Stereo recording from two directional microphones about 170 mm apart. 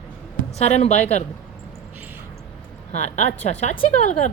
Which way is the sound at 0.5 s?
40° left (ahead or behind).